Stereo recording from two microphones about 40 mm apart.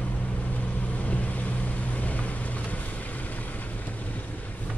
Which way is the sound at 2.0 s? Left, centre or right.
Left.